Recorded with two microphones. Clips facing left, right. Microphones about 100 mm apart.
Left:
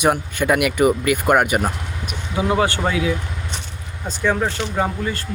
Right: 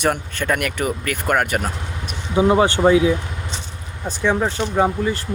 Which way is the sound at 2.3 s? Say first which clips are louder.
Right 4 dB; 25° right (ahead or behind).